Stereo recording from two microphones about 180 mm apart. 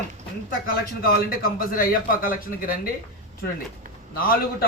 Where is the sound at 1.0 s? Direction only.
55° left (ahead or behind).